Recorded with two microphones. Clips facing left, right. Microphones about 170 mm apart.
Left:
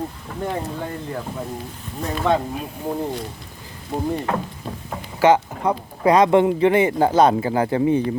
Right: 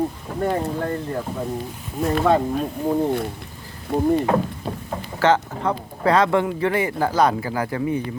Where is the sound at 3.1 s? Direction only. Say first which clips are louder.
Right 5 dB; 55° right (ahead or behind).